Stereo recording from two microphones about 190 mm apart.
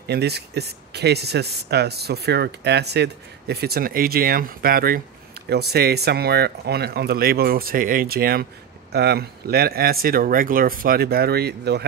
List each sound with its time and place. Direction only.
0.0 s speech: 60° right (ahead or behind)